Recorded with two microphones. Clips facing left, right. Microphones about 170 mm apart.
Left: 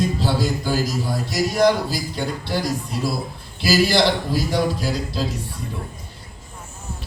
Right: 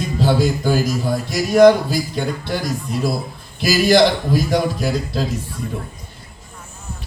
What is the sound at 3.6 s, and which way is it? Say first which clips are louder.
Speech: right 4 dB; 50° right (ahead or behind).